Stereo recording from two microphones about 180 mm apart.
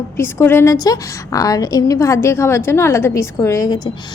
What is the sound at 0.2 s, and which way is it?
A woman's voice, 15° left (ahead or behind).